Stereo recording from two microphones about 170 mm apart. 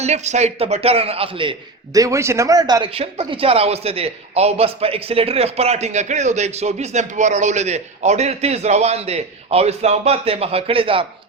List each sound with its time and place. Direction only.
0.0 s a man's voice: 40° right (ahead or behind)